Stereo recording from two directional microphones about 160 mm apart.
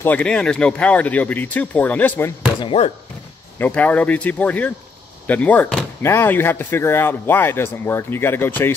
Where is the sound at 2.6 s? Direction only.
35° left (ahead or behind).